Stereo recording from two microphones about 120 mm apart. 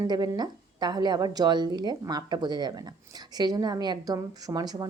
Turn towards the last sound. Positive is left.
turn(degrees=-30)  # may be behind; listen again after turning